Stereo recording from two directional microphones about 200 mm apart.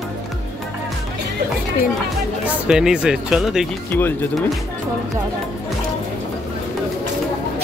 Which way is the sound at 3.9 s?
10° left (ahead or behind).